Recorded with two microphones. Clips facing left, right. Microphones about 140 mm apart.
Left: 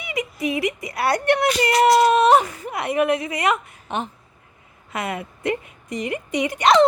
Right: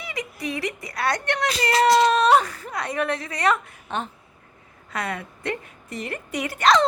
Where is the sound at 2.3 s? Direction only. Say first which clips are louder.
Left 2 dB; 20° left (ahead or behind).